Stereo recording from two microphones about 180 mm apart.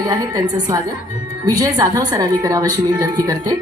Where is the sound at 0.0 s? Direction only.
20° right (ahead or behind).